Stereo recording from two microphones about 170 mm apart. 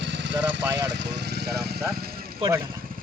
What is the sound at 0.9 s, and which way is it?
Speech, 85° right.